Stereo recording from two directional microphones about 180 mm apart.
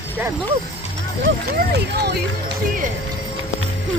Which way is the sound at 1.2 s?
55° right (ahead or behind).